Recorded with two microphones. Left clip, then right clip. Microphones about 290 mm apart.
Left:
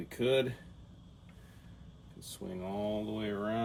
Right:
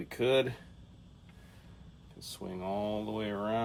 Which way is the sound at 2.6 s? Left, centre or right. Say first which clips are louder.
Right 2 dB; right.